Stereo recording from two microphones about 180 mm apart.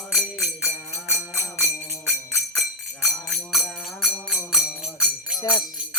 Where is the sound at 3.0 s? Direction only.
Centre (ahead or behind).